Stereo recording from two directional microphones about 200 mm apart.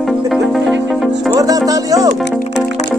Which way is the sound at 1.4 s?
20° right (ahead or behind).